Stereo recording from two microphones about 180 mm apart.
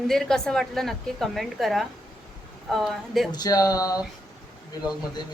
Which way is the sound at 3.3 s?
20° left (ahead or behind).